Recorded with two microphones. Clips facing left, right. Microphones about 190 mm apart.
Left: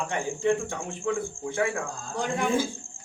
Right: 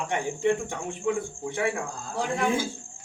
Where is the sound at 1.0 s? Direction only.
15° right (ahead or behind).